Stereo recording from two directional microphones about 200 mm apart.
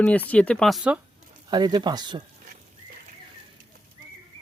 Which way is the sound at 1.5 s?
20° right (ahead or behind).